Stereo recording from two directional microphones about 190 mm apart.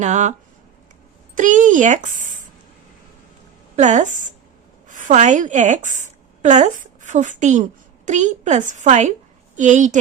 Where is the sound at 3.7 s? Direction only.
40° right (ahead or behind).